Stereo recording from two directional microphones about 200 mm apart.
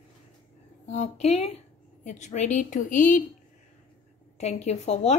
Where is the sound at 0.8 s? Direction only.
35° left (ahead or behind).